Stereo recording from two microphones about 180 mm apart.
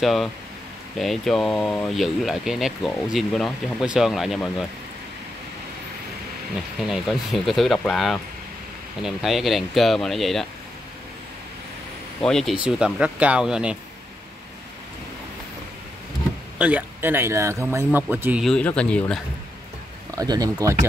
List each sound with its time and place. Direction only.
0.0 s speech: centre (ahead or behind)
6.9 s speech: centre (ahead or behind)
12.2 s speech: 5° left (ahead or behind)
16.5 s speech: 10° right (ahead or behind)
18.4 s speech: 5° left (ahead or behind)
20.2 s speech: 20° right (ahead or behind)